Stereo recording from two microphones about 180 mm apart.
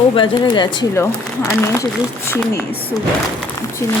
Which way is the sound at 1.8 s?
15° left (ahead or behind).